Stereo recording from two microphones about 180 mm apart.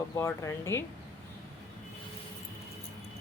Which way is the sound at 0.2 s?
15° left (ahead or behind).